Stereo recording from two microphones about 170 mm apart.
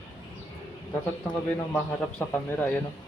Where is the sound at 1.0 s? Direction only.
10° left (ahead or behind).